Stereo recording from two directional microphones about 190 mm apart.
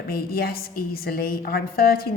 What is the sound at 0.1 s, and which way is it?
A woman's voice, 50° left (ahead or behind).